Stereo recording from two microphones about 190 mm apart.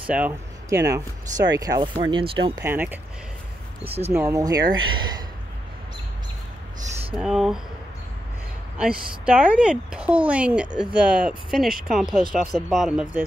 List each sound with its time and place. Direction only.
0.1 s speech: 10° right (ahead or behind)
2.6 s speech: 10° right (ahead or behind)
3.8 s speech: 30° right (ahead or behind)
4.1 s speech: 15° right (ahead or behind)
7.2 s speech: 5° right (ahead or behind)
8.7 s speech: 5° right (ahead or behind)